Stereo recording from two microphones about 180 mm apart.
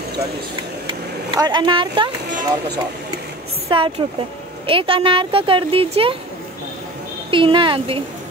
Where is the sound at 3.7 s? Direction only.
30° right (ahead or behind).